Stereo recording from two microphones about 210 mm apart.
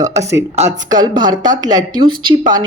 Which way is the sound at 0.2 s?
15° right (ahead or behind).